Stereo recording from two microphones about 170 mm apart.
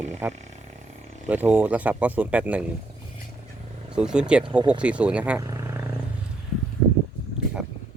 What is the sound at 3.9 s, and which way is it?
Speech, 5° right (ahead or behind).